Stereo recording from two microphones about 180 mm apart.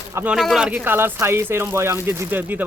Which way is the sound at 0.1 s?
15° right (ahead or behind).